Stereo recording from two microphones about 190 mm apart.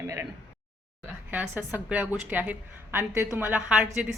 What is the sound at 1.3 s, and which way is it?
Speech, 10° right (ahead or behind).